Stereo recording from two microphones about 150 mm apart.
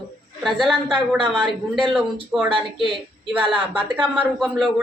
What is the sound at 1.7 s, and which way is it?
Speech, centre (ahead or behind).